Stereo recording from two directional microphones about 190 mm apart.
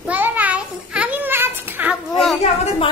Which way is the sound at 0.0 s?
10° right (ahead or behind).